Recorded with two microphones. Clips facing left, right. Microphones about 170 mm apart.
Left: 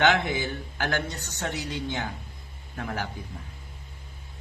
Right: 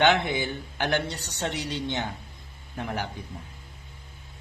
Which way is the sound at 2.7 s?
20° right (ahead or behind).